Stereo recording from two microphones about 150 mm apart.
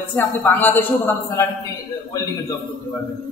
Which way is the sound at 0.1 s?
10° left (ahead or behind).